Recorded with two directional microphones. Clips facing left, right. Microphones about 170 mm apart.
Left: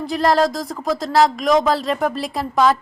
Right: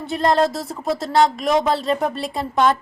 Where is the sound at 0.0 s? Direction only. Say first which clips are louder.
Left 1 dB; centre (ahead or behind).